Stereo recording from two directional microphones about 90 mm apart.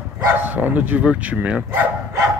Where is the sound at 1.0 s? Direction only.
10° right (ahead or behind).